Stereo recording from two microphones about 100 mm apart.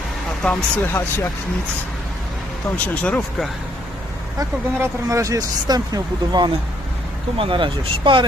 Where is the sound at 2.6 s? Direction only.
15° left (ahead or behind).